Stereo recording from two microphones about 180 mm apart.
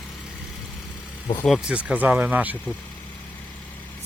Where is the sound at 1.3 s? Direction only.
Centre (ahead or behind).